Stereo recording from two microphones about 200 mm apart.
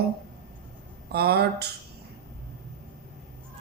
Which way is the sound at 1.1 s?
50° right (ahead or behind).